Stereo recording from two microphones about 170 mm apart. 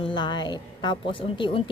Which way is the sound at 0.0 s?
25° left (ahead or behind).